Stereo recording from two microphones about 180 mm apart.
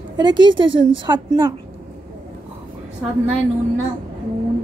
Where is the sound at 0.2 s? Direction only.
25° right (ahead or behind).